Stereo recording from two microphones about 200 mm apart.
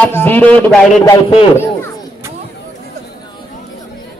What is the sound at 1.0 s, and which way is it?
Speech, 25° left (ahead or behind).